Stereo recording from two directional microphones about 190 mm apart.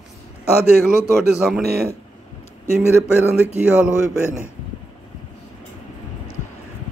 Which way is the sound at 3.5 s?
5° right (ahead or behind).